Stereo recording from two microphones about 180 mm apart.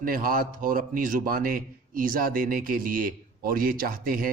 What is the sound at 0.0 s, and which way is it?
Speech, 50° right (ahead or behind).